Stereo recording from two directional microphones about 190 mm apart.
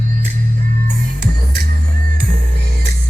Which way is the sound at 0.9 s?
50° right (ahead or behind).